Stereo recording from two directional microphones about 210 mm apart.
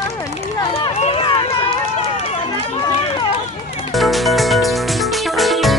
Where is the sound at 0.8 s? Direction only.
30° left (ahead or behind).